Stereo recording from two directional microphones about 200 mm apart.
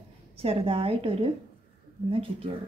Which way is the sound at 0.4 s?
30° right (ahead or behind).